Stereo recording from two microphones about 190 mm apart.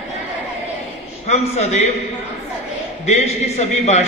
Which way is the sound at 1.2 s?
35° left (ahead or behind).